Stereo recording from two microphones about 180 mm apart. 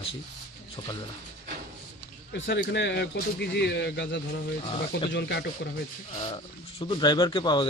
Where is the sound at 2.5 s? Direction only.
80° left.